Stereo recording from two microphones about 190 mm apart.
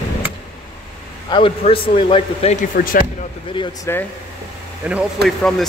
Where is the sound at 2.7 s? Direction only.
45° left (ahead or behind).